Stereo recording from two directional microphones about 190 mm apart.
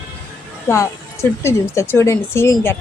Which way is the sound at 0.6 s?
15° left (ahead or behind).